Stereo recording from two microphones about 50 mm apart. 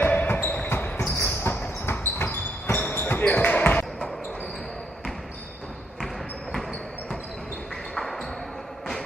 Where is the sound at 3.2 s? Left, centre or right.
Left.